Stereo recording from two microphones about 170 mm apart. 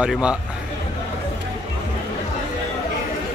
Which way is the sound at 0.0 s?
5° right (ahead or behind).